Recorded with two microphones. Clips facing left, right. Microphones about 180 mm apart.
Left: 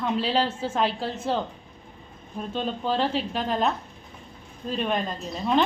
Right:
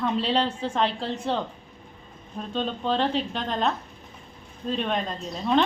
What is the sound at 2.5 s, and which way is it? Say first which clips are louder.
A woman's voice: right 1 dB; 5° left (ahead or behind).